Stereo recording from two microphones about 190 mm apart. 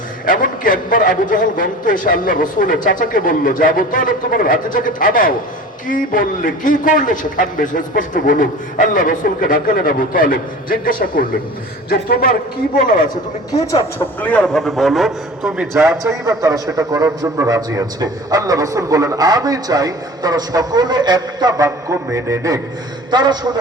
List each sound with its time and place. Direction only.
0.3 s a man's voice: 45° left (ahead or behind)
14.2 s a man's voice: 10° left (ahead or behind)
15.5 s a man's voice: 15° right (ahead or behind)